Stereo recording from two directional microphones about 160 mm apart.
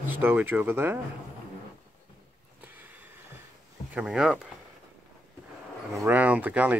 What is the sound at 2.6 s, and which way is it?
Sniff, 10° right (ahead or behind).